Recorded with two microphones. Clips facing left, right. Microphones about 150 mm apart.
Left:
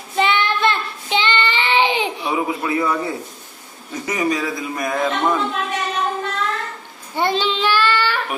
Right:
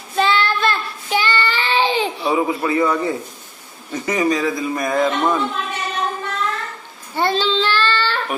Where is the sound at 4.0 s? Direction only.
Centre (ahead or behind).